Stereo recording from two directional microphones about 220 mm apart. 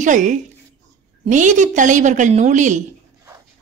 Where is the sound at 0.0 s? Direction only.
35° right (ahead or behind).